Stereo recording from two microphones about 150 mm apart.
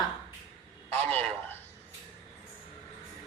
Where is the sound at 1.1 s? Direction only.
10° left (ahead or behind).